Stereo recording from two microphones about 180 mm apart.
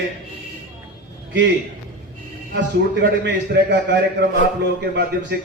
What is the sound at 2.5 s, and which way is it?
A man's voice, 75° right (ahead or behind).